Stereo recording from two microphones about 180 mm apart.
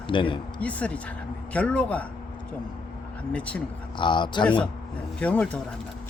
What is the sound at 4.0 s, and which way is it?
Speech, 25° left (ahead or behind).